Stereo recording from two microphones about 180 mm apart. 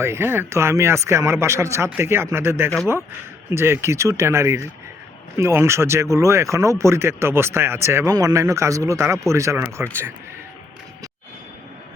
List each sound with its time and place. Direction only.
0.0 s speech: 15° right (ahead or behind)